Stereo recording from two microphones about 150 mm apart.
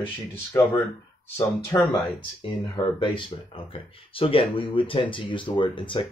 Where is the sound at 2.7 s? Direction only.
35° left (ahead or behind).